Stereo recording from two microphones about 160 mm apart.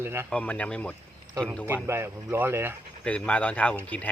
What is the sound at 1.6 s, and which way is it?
Speech, 15° right (ahead or behind).